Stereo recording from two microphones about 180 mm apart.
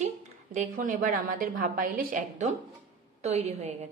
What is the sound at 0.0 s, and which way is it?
A woman's voice, 40° right (ahead or behind).